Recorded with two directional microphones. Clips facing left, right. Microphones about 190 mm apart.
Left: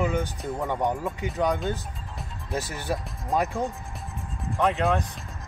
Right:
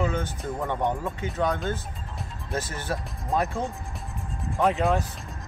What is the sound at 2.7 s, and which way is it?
Speech, 15° left (ahead or behind).